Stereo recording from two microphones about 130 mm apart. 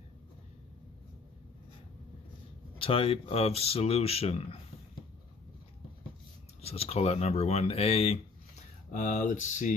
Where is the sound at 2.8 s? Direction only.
45° left (ahead or behind).